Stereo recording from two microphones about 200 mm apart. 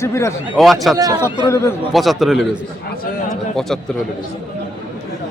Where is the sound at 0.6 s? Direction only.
Centre (ahead or behind).